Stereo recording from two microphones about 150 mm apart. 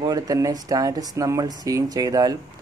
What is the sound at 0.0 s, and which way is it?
Speech, 25° right (ahead or behind).